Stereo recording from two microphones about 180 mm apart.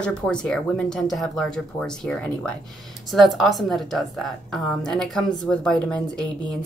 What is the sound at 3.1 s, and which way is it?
Speech, centre (ahead or behind).